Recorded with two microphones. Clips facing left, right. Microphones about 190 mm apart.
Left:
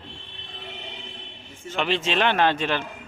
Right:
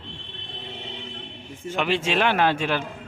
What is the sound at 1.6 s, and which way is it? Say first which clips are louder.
A man's voice: right 1 dB; 10° right (ahead or behind).